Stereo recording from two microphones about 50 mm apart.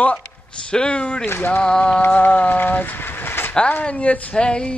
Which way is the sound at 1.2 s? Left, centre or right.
Left.